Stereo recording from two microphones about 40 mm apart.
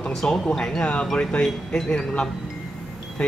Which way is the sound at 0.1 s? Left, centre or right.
Centre.